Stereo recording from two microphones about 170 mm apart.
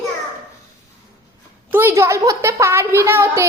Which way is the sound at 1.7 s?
15° right (ahead or behind).